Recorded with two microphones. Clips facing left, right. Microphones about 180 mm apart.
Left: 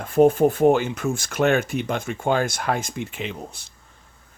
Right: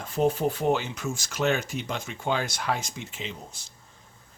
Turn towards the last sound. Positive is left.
turn(degrees=60)  # may be behind; listen again after turning